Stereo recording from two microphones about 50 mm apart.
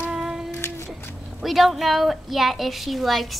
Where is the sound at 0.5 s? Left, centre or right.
Left.